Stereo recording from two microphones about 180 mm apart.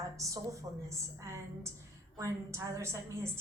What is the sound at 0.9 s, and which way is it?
A woman's voice, 15° right (ahead or behind).